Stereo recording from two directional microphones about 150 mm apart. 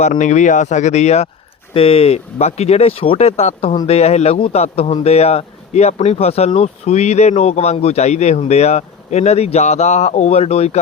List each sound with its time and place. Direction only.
0.0 s a man's voice: 55° left (ahead or behind)